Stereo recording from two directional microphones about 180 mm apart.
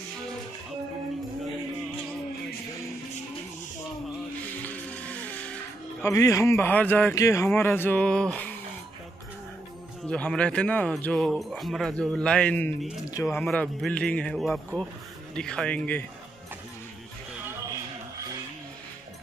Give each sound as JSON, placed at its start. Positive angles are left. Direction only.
{"t": 4.6, "sound": "music", "side_deg": 10}
{"t": 6.0, "sound": "speech", "side_deg": 15}
{"t": 10.0, "sound": "speech", "side_deg": 5}
{"t": 13.0, "sound": "speech", "side_deg": 20}
{"t": 13.3, "sound": "speech", "side_deg": 5}